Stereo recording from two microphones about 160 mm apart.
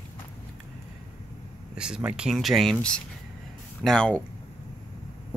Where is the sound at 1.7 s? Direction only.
5° right (ahead or behind).